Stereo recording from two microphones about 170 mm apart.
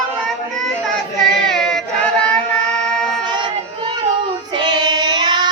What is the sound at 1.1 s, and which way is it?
Child singing, centre (ahead or behind).